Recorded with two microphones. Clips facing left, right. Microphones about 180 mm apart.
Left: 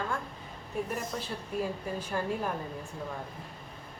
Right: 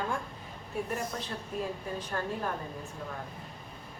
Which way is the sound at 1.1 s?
5° left (ahead or behind).